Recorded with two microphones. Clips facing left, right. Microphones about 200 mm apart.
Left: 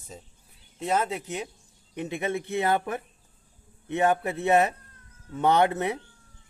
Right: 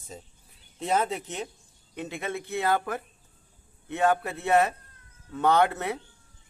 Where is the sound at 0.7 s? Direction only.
Centre (ahead or behind).